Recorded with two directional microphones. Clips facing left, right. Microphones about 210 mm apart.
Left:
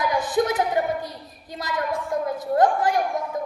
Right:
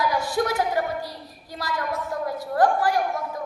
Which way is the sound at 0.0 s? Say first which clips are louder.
Left 2 dB; 20° left (ahead or behind).